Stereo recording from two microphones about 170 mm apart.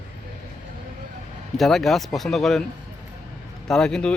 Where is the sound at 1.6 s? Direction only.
Centre (ahead or behind).